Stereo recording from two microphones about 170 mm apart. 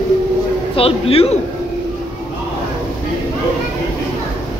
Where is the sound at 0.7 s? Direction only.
35° left (ahead or behind).